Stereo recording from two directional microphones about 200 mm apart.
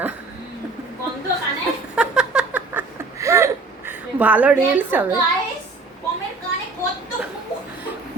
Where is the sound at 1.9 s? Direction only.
5° right (ahead or behind).